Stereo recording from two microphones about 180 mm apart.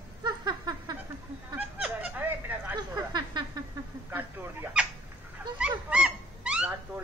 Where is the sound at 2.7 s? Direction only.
25° right (ahead or behind).